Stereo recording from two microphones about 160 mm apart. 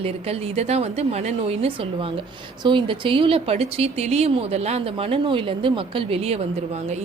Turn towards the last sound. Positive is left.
turn(degrees=-45)  # may be behind; listen again after turning